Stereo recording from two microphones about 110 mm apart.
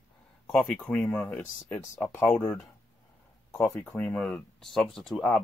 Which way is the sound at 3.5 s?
25° left (ahead or behind).